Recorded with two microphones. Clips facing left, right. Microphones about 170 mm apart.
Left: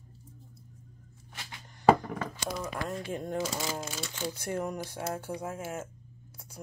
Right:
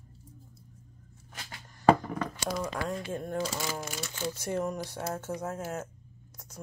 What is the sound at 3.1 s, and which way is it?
Speech, 20° left (ahead or behind).